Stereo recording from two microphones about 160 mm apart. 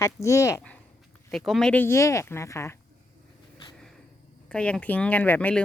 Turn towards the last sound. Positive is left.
turn(degrees=10)  # may be behind; listen again after turning